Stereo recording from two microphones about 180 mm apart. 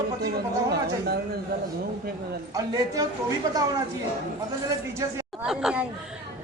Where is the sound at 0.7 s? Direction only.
65° right (ahead or behind).